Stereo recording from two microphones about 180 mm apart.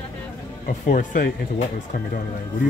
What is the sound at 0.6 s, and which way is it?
Speech, 50° left (ahead or behind).